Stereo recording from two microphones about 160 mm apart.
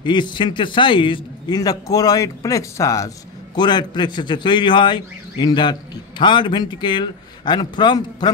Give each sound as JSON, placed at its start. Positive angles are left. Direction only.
{"t": 0.0, "sound": "a man's voice", "side_deg": 30}